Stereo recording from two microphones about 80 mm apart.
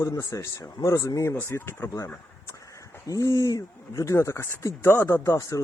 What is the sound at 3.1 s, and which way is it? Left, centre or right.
Speech, left.